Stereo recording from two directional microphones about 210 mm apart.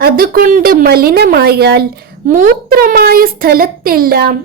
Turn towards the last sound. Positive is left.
turn(degrees=-45)  # may be behind; listen again after turning